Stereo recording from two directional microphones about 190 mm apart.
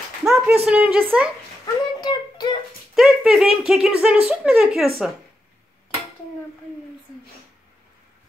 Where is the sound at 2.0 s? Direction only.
20° left (ahead or behind).